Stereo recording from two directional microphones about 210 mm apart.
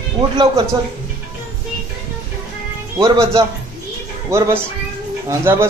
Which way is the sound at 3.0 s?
15° right (ahead or behind).